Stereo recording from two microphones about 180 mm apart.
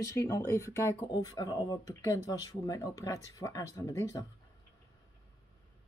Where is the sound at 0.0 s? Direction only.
15° left (ahead or behind).